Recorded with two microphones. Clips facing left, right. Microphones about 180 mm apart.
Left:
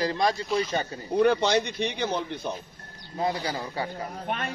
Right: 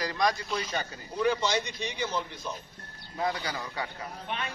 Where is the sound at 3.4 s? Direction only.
30° left (ahead or behind).